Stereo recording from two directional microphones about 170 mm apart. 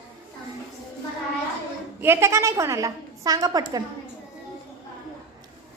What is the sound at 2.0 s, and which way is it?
Speech, 15° right (ahead or behind).